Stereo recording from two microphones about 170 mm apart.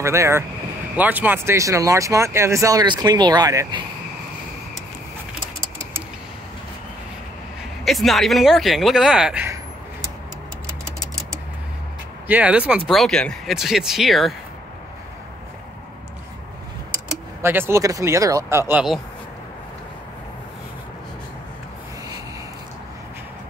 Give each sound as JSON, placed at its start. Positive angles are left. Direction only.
{"t": 0.0, "sound": "speech", "side_deg": -15}
{"t": 7.8, "sound": "speech", "side_deg": 0}
{"t": 12.3, "sound": "speech", "side_deg": -10}
{"t": 17.4, "sound": "speech", "side_deg": -15}